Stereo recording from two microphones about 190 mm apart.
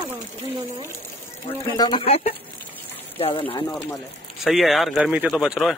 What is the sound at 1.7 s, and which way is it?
Speech, 25° left (ahead or behind).